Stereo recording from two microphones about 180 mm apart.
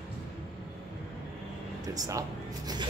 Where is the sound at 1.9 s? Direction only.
20° right (ahead or behind).